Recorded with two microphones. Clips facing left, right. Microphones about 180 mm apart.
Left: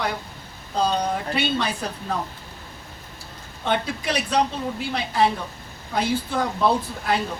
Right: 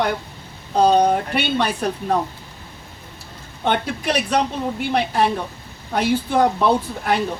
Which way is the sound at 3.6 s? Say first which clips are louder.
Right 3 dB; 65° right (ahead or behind).